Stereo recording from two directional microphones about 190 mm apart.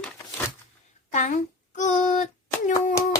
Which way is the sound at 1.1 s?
40° left (ahead or behind).